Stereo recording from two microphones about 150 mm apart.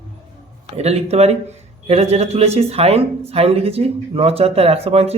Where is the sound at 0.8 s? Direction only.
45° right (ahead or behind).